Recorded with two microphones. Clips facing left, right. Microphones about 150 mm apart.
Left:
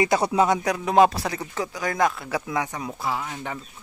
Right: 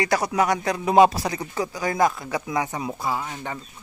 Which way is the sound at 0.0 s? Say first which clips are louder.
Left 2 dB; 25° left (ahead or behind).